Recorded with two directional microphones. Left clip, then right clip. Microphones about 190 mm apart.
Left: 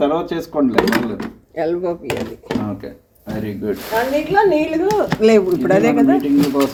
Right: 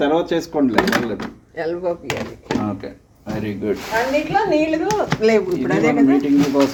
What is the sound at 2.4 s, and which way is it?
Speech, 10° right (ahead or behind).